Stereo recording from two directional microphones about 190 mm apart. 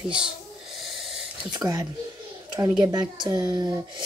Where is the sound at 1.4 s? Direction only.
20° right (ahead or behind).